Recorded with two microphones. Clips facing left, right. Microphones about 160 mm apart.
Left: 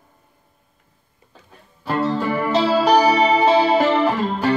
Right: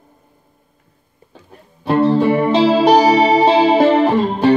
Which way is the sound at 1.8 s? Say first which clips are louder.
Right 8 dB; 30° right (ahead or behind).